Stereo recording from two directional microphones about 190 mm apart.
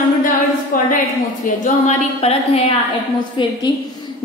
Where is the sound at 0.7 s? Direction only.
45° left (ahead or behind).